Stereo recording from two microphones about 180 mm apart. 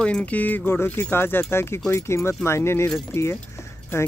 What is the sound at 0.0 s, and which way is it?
Speech, 5° left (ahead or behind).